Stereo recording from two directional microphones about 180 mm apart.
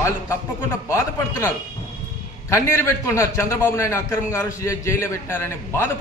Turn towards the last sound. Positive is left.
turn(degrees=15)  # may be behind; listen again after turning